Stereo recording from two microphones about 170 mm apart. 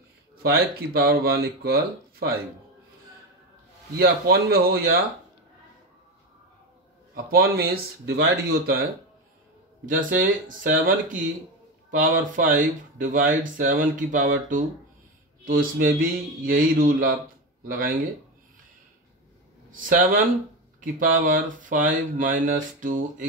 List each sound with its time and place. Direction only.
0.4 s speech: 65° right (ahead or behind)
4.0 s speech: 65° right (ahead or behind)
7.2 s speech: 60° right (ahead or behind)
9.8 s speech: 50° right (ahead or behind)
19.7 s speech: 50° right (ahead or behind)